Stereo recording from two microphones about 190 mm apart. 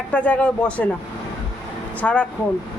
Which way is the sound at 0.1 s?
5° left (ahead or behind).